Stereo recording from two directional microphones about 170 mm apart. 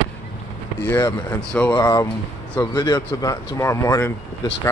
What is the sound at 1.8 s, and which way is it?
Speech, 20° left (ahead or behind).